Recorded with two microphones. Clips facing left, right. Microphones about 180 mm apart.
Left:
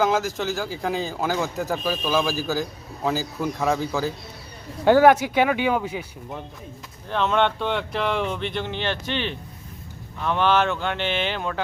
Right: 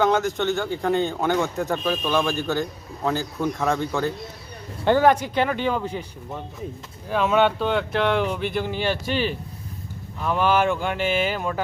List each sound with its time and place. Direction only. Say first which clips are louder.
0.0 s speech: right 2 dB; centre (ahead or behind)
7.1 s speech: right 2 dB; 5° right (ahead or behind)